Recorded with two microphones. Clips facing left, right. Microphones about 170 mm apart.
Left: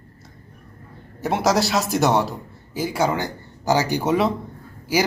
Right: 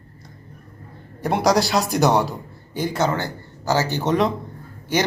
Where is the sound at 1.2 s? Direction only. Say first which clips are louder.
Right 1 dB; centre (ahead or behind).